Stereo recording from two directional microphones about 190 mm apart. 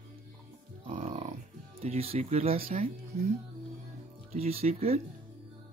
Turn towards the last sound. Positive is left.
turn(degrees=-30)  # may be behind; listen again after turning